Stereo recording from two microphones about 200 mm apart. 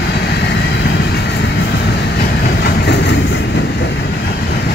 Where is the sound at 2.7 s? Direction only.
55° left (ahead or behind).